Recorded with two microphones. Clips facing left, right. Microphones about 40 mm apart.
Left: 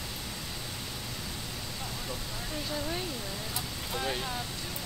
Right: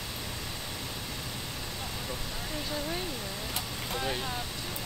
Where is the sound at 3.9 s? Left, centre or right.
Centre.